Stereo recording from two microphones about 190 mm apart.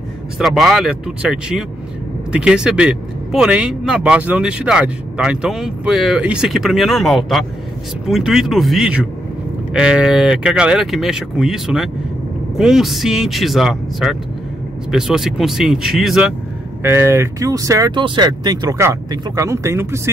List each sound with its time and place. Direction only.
0.4 s speech: centre (ahead or behind)
16.8 s speech: 15° right (ahead or behind)